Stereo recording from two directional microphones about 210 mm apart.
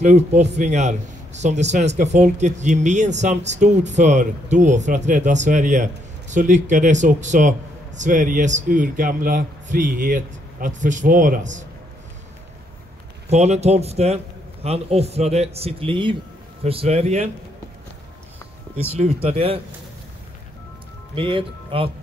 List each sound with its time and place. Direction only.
0.0 s a man's voice: 35° right (ahead or behind)
13.3 s a man's voice: 30° right (ahead or behind)
19.2 s speech: 25° right (ahead or behind)
21.1 s speech: 25° right (ahead or behind)